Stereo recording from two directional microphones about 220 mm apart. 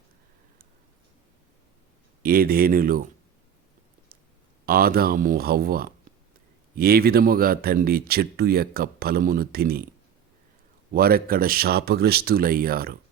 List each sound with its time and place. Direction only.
2.2 s speech: 45° right (ahead or behind)
4.6 s speech: 40° right (ahead or behind)
10.9 s speech: 45° right (ahead or behind)